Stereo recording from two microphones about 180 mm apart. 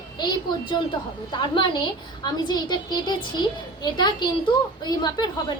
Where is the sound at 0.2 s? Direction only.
25° left (ahead or behind).